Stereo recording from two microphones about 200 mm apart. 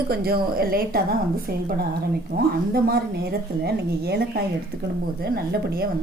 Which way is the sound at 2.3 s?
45° right (ahead or behind).